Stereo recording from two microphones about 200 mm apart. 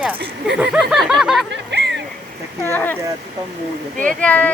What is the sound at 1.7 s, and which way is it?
Rowboat, 60° right (ahead or behind).